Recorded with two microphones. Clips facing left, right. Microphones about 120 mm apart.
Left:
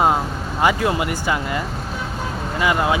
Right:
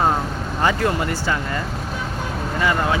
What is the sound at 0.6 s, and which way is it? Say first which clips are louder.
Speech: left 2 dB; 10° left (ahead or behind).